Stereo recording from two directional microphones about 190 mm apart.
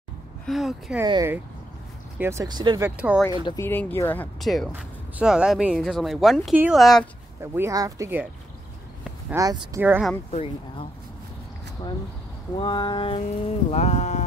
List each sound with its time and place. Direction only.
0.5 s speech: centre (ahead or behind)
1.0 s speech: 20° right (ahead or behind)
3.4 s speech: 15° left (ahead or behind)
7.5 s speech: 15° right (ahead or behind)
9.8 s speech: 10° right (ahead or behind)
10.3 s speech: 30° left (ahead or behind)
12.5 s speech: 25° left (ahead or behind)